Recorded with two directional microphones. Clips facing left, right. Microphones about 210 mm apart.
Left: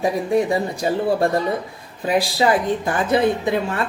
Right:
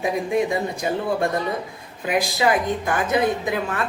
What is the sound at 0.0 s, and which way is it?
Speech, 35° left (ahead or behind).